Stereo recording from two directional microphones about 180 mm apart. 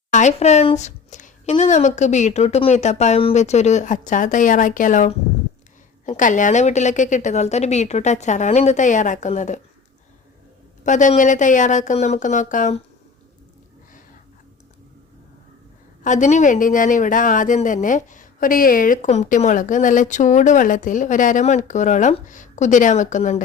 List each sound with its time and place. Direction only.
0.1 s a woman's voice: 40° left (ahead or behind)
10.8 s speech: 45° left (ahead or behind)
16.0 s speech: 40° left (ahead or behind)